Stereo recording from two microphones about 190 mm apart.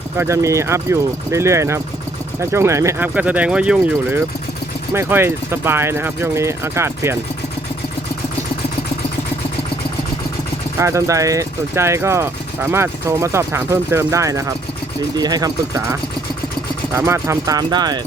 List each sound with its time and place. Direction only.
0.2 s speech: 15° right (ahead or behind)
10.8 s speech: 15° right (ahead or behind)